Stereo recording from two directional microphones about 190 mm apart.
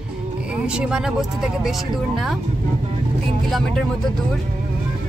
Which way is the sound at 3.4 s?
Centre (ahead or behind).